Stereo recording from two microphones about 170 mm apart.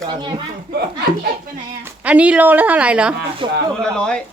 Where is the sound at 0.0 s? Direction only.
25° right (ahead or behind).